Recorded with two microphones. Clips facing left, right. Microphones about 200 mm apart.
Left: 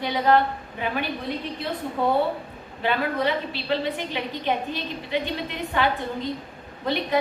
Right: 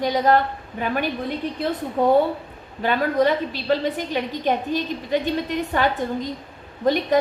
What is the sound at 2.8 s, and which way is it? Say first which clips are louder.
A woman's voice: right 5 dB; 45° right (ahead or behind).